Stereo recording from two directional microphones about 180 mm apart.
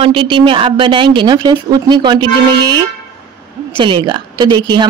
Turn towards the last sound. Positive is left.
turn(degrees=-25)  # may be behind; listen again after turning